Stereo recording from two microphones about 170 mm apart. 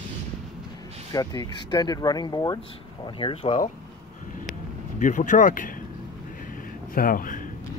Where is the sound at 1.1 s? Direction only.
25° left (ahead or behind).